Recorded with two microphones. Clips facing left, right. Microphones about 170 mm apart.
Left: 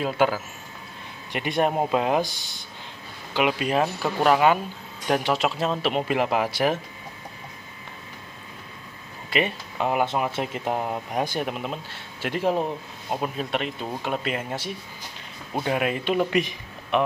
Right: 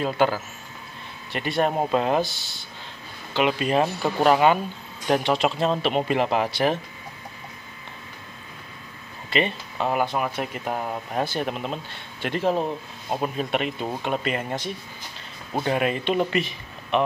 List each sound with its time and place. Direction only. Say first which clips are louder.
0.0 s speech: even; 5° left (ahead or behind)
1.3 s speech: even; 15° left (ahead or behind)
9.3 s speech: right 1 dB; 10° left (ahead or behind)
13.1 s speech: right 2 dB; centre (ahead or behind)